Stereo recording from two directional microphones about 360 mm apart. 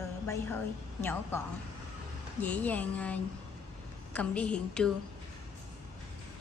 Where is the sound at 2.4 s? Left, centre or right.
Centre.